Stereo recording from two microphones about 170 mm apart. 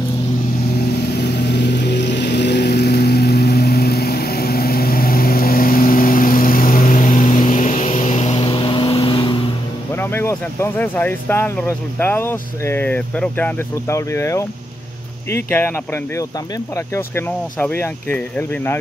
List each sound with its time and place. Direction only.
1.0 s vehicle: 70° left (ahead or behind); by 9.4 s 30° left (ahead or behind)
9.9 s speech: 15° left (ahead or behind)